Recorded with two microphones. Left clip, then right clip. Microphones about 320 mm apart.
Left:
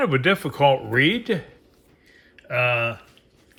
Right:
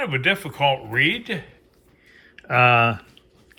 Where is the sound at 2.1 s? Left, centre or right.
Centre.